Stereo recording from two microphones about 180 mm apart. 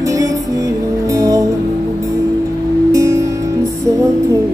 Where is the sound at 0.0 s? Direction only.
20° right (ahead or behind).